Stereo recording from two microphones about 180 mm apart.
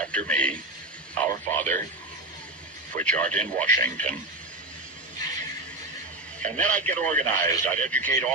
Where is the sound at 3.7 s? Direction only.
45° right (ahead or behind).